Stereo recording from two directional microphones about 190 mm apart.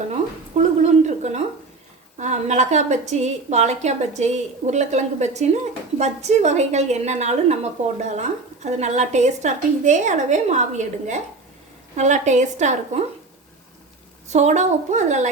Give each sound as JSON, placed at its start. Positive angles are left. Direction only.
{"t": 0.1, "sound": "a sound", "side_deg": -35}
{"t": 2.1, "sound": "a woman's voice", "side_deg": -35}
{"t": 14.3, "sound": "a woman's voice", "side_deg": -35}